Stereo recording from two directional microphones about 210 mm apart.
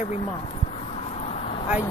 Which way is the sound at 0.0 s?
30° left (ahead or behind).